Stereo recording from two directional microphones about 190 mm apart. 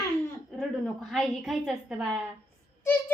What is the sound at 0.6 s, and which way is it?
A woman's voice, centre (ahead or behind).